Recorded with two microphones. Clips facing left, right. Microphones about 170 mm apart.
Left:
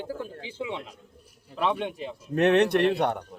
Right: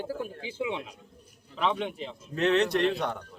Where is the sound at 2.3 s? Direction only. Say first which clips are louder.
Left 4 dB; 60° left (ahead or behind).